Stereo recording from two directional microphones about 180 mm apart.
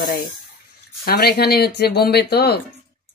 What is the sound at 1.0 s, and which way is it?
Speech, 60° left (ahead or behind).